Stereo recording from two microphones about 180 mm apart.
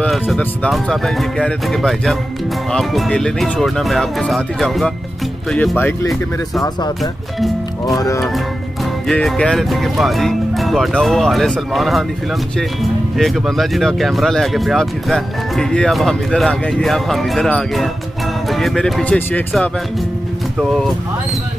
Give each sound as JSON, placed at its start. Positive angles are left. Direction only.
{"t": 0.0, "sound": "speech", "side_deg": 5}
{"t": 7.0, "sound": "speech", "side_deg": 0}
{"t": 7.8, "sound": "speech", "side_deg": 20}
{"t": 9.0, "sound": "speech", "side_deg": 5}
{"t": 13.2, "sound": "speech", "side_deg": 0}